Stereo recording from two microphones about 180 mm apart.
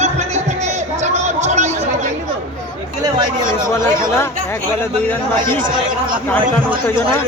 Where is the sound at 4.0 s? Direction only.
15° left (ahead or behind).